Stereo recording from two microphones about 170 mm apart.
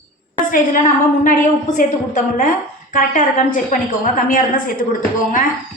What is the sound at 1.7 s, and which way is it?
A woman's voice, 50° left (ahead or behind).